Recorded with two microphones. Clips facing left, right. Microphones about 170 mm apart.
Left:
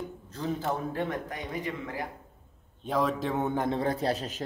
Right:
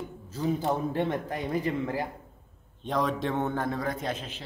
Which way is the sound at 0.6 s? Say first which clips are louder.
Right 3 dB; 25° right (ahead or behind).